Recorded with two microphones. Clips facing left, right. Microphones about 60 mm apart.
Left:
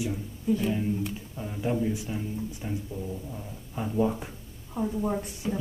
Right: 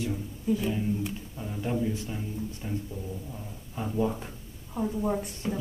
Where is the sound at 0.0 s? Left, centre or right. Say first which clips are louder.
Left 1 dB; centre.